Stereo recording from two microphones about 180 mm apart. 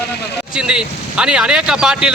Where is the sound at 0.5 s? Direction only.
5° right (ahead or behind).